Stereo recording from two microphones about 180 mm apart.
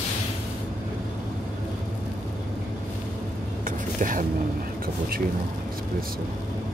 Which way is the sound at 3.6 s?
45° right (ahead or behind).